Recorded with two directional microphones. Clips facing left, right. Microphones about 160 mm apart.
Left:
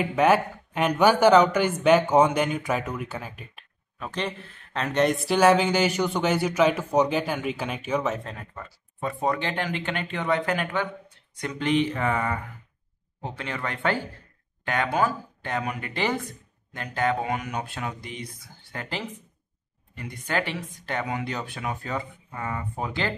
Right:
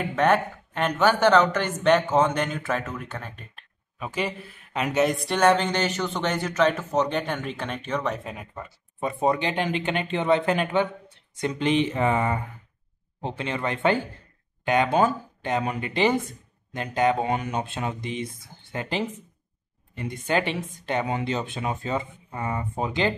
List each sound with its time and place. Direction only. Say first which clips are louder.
0.0 s speech: left 1 dB; 10° left (ahead or behind)
4.0 s speech: right 2 dB; 10° right (ahead or behind)
8.3 s speech: right 2 dB; 15° right (ahead or behind)